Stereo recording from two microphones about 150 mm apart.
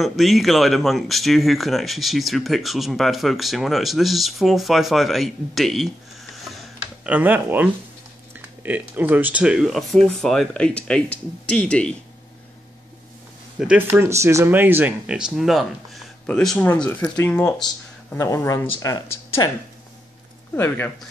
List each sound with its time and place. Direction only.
0.0 s speech: centre (ahead or behind)
7.1 s speech: 10° right (ahead or behind); by 11.9 s 5° left (ahead or behind)
13.6 s speech: 10° right (ahead or behind); by 19.5 s 25° left (ahead or behind)
20.5 s speech: 15° left (ahead or behind)